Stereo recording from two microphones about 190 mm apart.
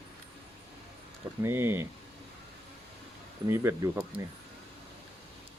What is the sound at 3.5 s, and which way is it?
Speech, 15° right (ahead or behind).